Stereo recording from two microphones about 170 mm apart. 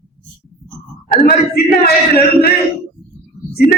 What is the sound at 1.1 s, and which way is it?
A man's voice, 60° left (ahead or behind).